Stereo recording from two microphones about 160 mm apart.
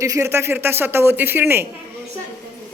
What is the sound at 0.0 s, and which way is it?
A woman's voice, 15° right (ahead or behind).